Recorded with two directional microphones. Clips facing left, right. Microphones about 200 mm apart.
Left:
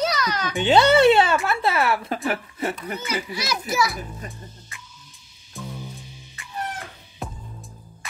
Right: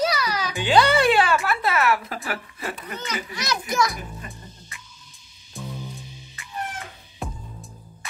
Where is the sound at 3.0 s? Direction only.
10° left (ahead or behind).